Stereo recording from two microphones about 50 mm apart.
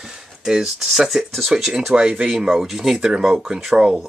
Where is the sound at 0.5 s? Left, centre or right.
Centre.